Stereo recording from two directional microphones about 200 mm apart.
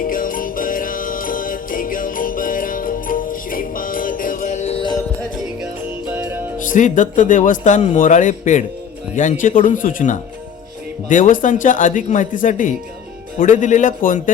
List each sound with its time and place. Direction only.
0.0 s music: 45° left (ahead or behind); by 4.9 s 25° left (ahead or behind)
6.1 s music: 10° right (ahead or behind)
6.7 s a man's voice: 40° left (ahead or behind)